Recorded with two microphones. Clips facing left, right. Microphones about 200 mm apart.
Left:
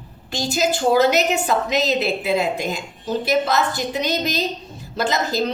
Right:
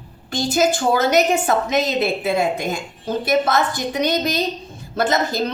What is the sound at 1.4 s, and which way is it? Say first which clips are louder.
A woman's voice: right 1 dB; 50° right (ahead or behind).